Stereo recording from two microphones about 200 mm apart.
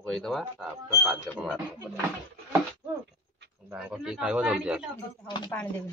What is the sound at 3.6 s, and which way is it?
A man's voice, 10° right (ahead or behind).